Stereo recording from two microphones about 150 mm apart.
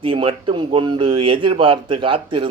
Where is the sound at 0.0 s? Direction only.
35° right (ahead or behind).